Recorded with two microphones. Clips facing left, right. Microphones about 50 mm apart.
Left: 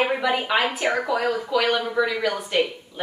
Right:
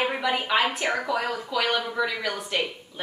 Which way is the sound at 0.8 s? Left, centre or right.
Centre.